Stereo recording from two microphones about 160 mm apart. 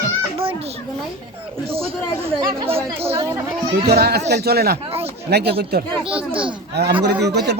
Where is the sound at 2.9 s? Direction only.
35° right (ahead or behind).